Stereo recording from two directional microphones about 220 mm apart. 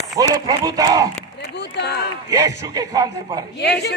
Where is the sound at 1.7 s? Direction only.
50° left (ahead or behind).